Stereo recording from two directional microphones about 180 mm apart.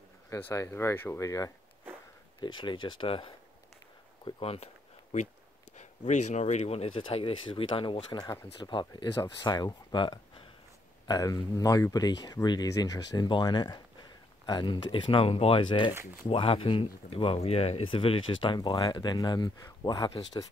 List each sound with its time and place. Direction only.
0.3 s speech: 15° left (ahead or behind); by 4.6 s 30° left (ahead or behind)
5.8 s speech: 40° left (ahead or behind)
15.9 s speech: 10° right (ahead or behind)
16.3 s speech: 30° left (ahead or behind)